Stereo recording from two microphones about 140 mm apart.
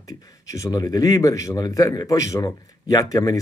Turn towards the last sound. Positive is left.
turn(degrees=25)  # may be behind; listen again after turning